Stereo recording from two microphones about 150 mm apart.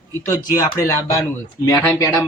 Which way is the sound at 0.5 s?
20° left (ahead or behind).